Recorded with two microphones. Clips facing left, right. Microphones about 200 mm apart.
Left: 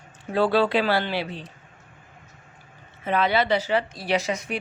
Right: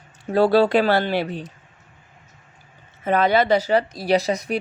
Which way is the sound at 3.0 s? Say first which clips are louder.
Right 4 dB; 45° right (ahead or behind).